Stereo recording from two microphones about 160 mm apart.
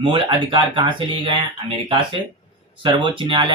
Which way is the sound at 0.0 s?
30° right (ahead or behind).